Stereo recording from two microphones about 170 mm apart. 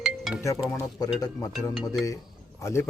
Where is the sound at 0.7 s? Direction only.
20° left (ahead or behind).